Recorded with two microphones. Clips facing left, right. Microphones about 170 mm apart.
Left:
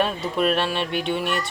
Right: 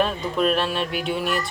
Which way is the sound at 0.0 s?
Centre (ahead or behind).